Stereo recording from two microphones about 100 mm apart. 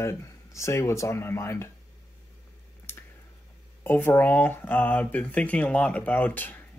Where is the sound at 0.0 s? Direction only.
30° left (ahead or behind).